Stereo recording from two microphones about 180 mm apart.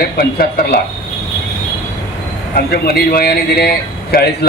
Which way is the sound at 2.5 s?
60° left (ahead or behind).